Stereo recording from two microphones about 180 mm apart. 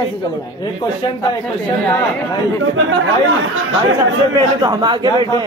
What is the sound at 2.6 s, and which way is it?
Speech, 90° right.